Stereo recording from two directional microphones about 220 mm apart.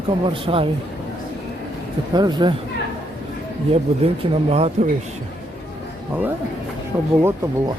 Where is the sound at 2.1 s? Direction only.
20° right (ahead or behind).